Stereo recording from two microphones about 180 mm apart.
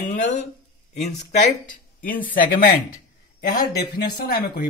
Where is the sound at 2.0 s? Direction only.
50° left (ahead or behind).